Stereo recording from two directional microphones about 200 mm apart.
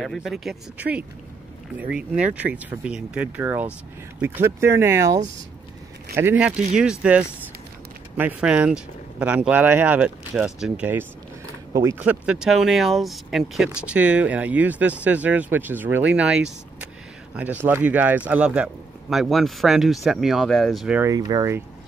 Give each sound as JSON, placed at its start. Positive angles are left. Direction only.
{"t": 0.0, "sound": "speech", "side_deg": 0}
{"t": 21.1, "sound": "speech", "side_deg": -20}